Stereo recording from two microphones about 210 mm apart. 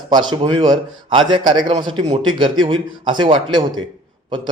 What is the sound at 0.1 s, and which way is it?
A man's voice, 20° right (ahead or behind).